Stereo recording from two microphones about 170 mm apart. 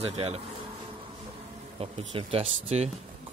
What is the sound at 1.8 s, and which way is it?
Speech, 35° right (ahead or behind).